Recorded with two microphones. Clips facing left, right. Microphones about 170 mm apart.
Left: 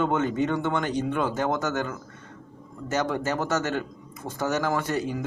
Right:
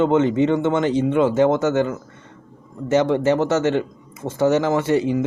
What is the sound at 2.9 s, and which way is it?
Speech, 25° right (ahead or behind).